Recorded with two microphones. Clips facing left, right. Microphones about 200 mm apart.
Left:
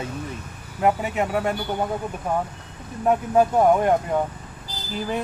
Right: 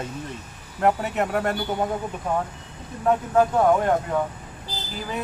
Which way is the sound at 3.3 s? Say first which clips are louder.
Left 2 dB; 15° left (ahead or behind).